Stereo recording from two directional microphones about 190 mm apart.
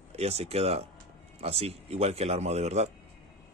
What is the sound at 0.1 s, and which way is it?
Speech, 35° right (ahead or behind).